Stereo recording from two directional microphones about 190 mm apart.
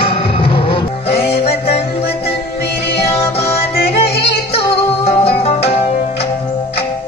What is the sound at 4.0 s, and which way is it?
Music, 60° left (ahead or behind).